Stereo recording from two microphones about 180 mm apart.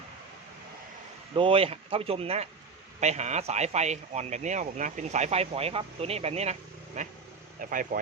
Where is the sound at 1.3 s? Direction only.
30° right (ahead or behind).